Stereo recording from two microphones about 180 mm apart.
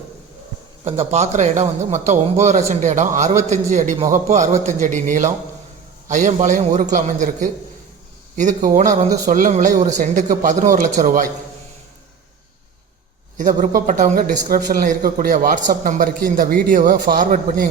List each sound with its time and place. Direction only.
0.9 s a man's voice: 35° right (ahead or behind)
13.3 s a man's voice: 45° right (ahead or behind)